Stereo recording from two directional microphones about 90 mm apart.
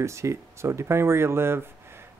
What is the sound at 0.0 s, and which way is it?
Speech, 30° right (ahead or behind).